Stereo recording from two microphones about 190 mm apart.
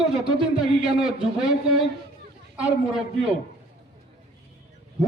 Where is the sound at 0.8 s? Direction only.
5° right (ahead or behind).